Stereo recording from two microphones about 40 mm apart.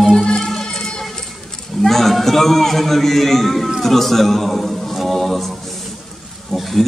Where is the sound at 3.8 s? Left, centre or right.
Centre.